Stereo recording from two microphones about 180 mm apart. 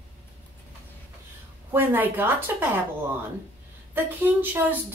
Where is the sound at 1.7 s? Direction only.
10° right (ahead or behind).